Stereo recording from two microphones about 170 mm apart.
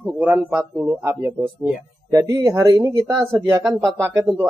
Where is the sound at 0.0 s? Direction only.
10° right (ahead or behind).